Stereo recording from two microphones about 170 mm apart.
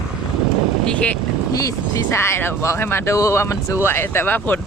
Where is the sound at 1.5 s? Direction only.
20° left (ahead or behind).